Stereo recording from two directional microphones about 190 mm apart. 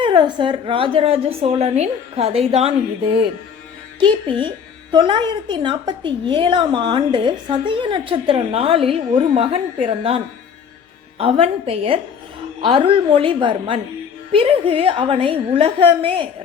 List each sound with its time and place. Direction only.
0.0 s a woman's voice: 25° right (ahead or behind)
11.2 s a woman's voice: 30° right (ahead or behind)